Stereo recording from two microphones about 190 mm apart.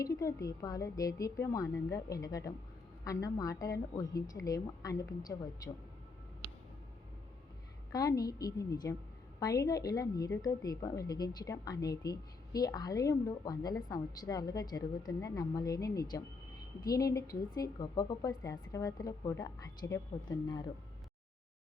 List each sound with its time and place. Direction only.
0.0 s a woman's voice: 15° left (ahead or behind)
7.9 s a woman's voice: 20° left (ahead or behind)